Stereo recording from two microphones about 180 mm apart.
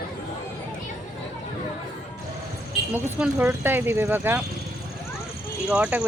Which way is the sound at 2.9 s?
10° right (ahead or behind).